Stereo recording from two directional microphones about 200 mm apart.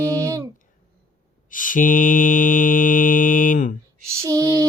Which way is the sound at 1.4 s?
40° left (ahead or behind).